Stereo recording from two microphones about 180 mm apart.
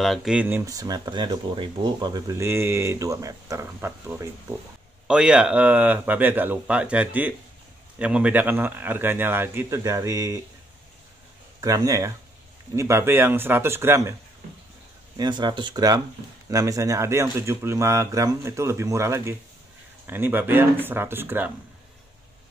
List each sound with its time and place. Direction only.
0.0 s speech: centre (ahead or behind); by 10.4 s 20° right (ahead or behind)
11.6 s speech: 20° right (ahead or behind)
15.1 s speech: 25° right (ahead or behind)